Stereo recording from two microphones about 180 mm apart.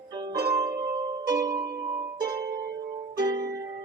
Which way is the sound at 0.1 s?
25° right (ahead or behind).